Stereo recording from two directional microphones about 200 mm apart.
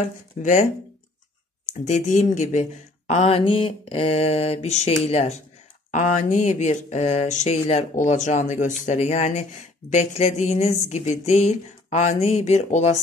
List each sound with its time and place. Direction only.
0.4 s speech: 40° left (ahead or behind)
1.7 s speech: 35° left (ahead or behind)